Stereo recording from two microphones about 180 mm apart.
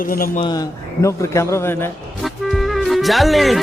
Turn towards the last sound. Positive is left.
turn(degrees=0)  # may be behind; listen again after turning